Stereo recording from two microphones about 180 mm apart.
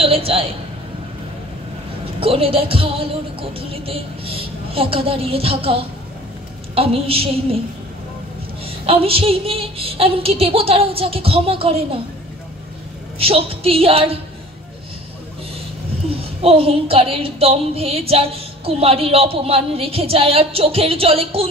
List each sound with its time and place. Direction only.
0.0 s a sound: 30° right (ahead or behind)
2.1 s speech: 30° right (ahead or behind)
8.6 s speech: 30° right (ahead or behind)
13.2 s speech: 30° right (ahead or behind)
16.1 s speech: 30° right (ahead or behind)